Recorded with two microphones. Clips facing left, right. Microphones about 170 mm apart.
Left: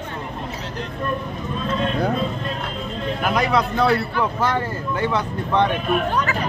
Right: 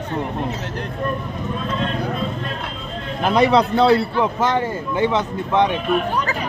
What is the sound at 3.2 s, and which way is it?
A man's voice, 25° right (ahead or behind).